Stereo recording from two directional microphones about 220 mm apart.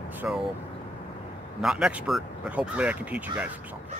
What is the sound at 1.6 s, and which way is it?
Speech, centre (ahead or behind).